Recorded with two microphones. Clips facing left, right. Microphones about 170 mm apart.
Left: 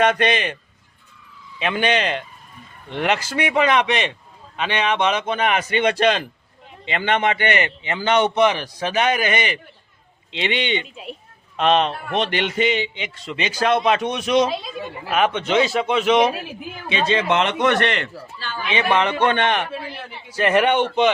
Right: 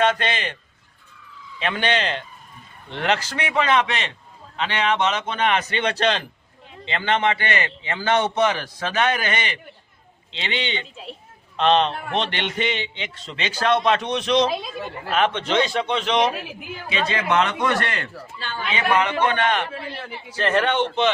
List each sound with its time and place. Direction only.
0.0 s speech: 15° left (ahead or behind)
1.5 s speech: 10° left (ahead or behind)
16.9 s a man's voice: 25° left (ahead or behind)
20.3 s speech: 15° left (ahead or behind)